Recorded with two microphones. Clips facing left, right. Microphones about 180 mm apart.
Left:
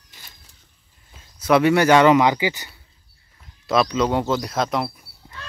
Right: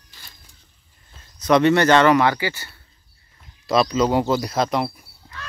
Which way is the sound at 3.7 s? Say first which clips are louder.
Right 1 dB; centre (ahead or behind).